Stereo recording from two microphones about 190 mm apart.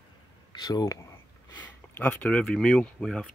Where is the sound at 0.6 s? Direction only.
20° left (ahead or behind).